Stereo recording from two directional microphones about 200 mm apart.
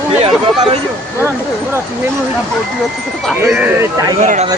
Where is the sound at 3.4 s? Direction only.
10° right (ahead or behind).